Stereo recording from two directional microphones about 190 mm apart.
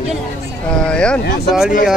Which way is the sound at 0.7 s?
5° left (ahead or behind).